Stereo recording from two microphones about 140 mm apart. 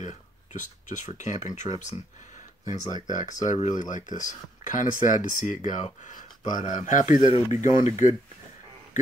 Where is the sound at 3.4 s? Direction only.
60° left (ahead or behind).